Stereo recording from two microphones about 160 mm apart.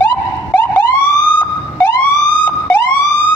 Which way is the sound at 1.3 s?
10° left (ahead or behind).